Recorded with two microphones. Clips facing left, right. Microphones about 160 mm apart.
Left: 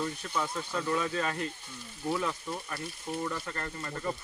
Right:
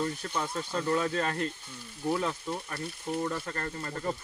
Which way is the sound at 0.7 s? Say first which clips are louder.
Right 4 dB; 30° right (ahead or behind).